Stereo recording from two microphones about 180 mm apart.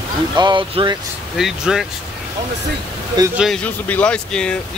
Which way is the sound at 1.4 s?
Centre (ahead or behind).